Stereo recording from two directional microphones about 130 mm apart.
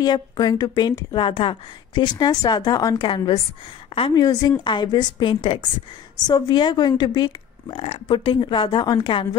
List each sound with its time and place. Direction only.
0.0 s a woman's voice: 35° left (ahead or behind)